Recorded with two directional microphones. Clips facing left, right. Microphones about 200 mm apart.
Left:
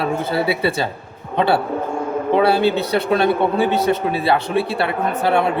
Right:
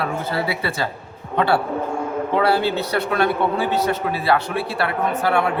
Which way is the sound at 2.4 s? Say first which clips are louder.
Left 3 dB; 20° left (ahead or behind).